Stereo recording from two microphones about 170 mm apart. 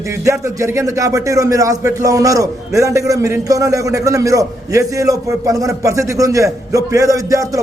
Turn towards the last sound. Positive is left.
turn(degrees=-20)  # may be behind; listen again after turning